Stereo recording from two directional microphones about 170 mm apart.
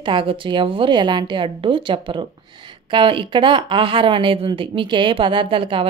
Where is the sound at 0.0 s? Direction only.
30° right (ahead or behind).